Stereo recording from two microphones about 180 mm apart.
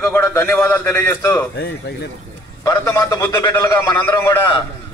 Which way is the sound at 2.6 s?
20° left (ahead or behind).